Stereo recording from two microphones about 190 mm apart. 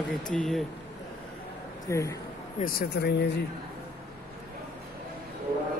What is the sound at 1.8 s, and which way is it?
Speech, 15° left (ahead or behind).